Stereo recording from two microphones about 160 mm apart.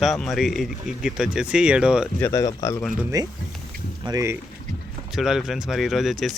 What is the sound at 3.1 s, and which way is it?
Speech, 20° right (ahead or behind).